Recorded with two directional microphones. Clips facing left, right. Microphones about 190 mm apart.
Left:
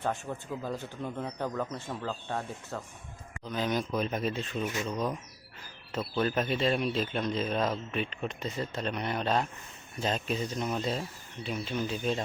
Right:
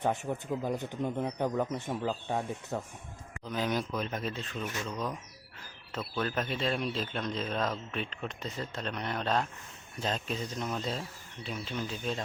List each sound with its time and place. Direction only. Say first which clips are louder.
0.0 s speech: right 2 dB; 20° right (ahead or behind)
3.9 s speech: left 4 dB; 10° left (ahead or behind)
6.5 s a man's voice: left 4 dB; 5° left (ahead or behind)